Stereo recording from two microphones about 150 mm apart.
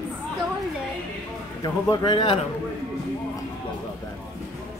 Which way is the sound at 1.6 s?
30° left (ahead or behind).